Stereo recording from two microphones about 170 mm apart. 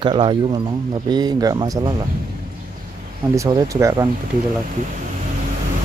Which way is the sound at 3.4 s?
20° right (ahead or behind).